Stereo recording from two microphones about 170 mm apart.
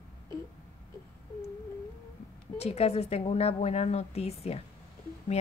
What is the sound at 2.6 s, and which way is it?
A woman's voice, 35° left (ahead or behind).